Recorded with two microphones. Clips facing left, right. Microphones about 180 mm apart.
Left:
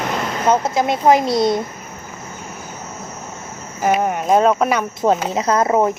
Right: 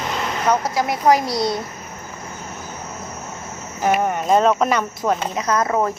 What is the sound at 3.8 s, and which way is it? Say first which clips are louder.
Speech: left 1 dB; centre (ahead or behind).